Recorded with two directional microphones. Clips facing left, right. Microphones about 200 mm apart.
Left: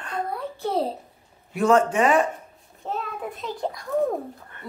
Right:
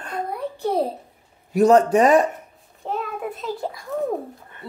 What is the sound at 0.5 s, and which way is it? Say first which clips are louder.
Speech: right 3 dB; 15° right (ahead or behind).